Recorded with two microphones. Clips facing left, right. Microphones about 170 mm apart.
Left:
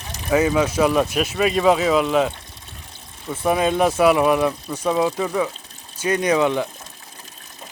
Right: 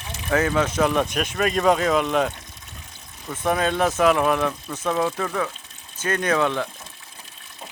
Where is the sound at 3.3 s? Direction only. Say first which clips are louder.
Left 3 dB; 10° left (ahead or behind).